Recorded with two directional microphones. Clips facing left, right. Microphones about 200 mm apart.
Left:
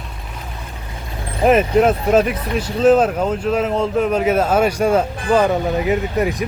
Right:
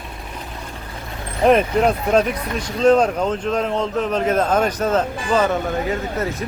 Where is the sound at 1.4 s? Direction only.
5° left (ahead or behind).